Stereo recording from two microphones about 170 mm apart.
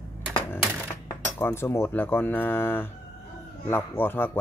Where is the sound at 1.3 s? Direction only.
15° left (ahead or behind).